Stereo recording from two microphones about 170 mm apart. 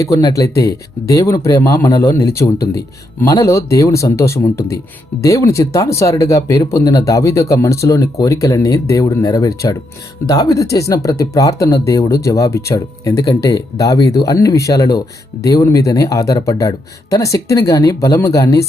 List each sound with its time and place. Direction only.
0.0 s speech: 20° left (ahead or behind)